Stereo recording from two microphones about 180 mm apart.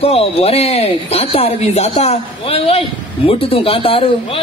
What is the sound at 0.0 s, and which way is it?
A man's voice, 35° left (ahead or behind).